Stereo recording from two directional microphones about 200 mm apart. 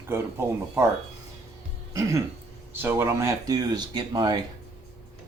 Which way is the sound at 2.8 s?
10° right (ahead or behind).